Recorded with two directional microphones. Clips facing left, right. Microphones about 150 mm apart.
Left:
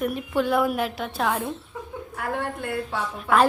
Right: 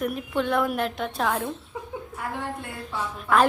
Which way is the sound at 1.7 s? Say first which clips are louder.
Even; 20° right (ahead or behind).